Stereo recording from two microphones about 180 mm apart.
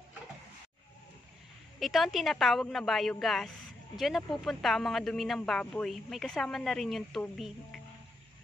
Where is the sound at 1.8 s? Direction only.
Centre (ahead or behind).